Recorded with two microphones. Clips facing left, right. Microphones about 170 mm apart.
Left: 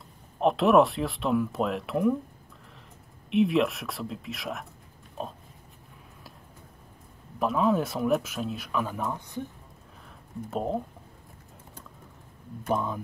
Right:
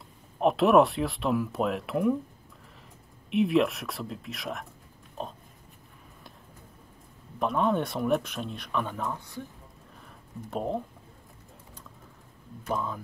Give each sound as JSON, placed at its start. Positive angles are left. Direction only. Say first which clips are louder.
{"t": 0.4, "sound": "speech", "louder": "even", "side_deg": 0}
{"t": 3.3, "sound": "speech", "louder": "even", "side_deg": 0}
{"t": 7.3, "sound": "speech", "louder": "left 2 dB", "side_deg": 0}
{"t": 10.5, "sound": "speech", "louder": "left 1 dB", "side_deg": 0}
{"t": 12.7, "sound": "speech", "louder": "left 3 dB", "side_deg": 20}